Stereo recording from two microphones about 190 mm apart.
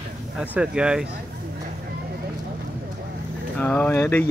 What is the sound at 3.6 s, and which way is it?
Speech, 10° left (ahead or behind).